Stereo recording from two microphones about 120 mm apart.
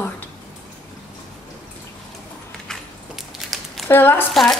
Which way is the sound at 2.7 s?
Centre (ahead or behind).